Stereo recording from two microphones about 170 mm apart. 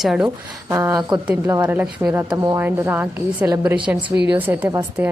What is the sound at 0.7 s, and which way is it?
A woman's voice, 15° right (ahead or behind).